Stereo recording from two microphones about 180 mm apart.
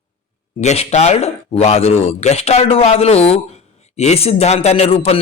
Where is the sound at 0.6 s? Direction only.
35° left (ahead or behind).